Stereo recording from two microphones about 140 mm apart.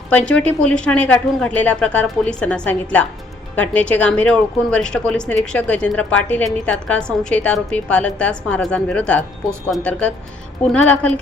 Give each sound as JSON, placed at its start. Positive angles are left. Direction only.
{"t": 0.3, "sound": "speech", "side_deg": 10}